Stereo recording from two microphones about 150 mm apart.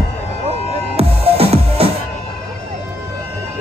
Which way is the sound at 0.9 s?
40° right (ahead or behind).